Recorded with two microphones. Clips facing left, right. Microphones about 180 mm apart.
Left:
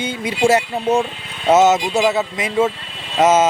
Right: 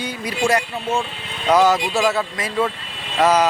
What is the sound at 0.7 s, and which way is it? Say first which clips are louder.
Speech: left 6 dB; 40° left (ahead or behind).